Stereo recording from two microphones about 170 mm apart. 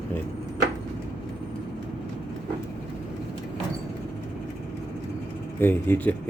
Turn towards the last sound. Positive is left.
turn(degrees=10)  # may be behind; listen again after turning